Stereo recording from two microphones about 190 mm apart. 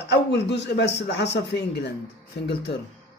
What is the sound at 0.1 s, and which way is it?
A man's voice, 65° left (ahead or behind).